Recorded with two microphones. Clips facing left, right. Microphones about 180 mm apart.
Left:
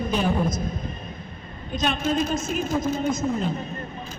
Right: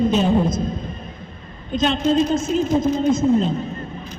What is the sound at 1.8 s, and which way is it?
A woman's voice, 25° right (ahead or behind).